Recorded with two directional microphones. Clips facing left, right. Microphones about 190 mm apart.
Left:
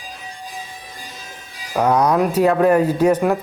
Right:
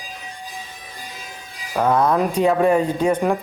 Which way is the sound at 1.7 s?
Centre (ahead or behind).